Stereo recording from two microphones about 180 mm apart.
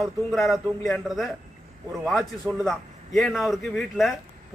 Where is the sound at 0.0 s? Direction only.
Centre (ahead or behind).